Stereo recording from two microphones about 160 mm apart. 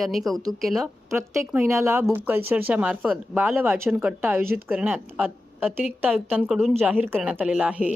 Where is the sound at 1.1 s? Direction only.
15° right (ahead or behind).